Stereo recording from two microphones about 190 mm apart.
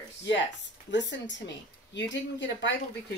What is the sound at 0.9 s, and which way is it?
Speech, 70° left (ahead or behind).